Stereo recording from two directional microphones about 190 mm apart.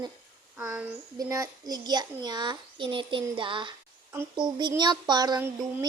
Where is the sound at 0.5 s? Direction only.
5° right (ahead or behind).